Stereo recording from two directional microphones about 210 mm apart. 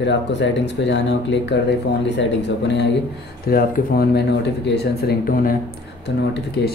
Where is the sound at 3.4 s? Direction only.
45° left (ahead or behind).